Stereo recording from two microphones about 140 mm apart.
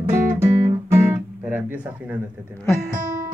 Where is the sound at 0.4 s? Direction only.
20° right (ahead or behind).